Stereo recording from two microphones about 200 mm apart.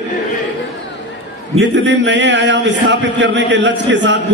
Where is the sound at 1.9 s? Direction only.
60° right (ahead or behind).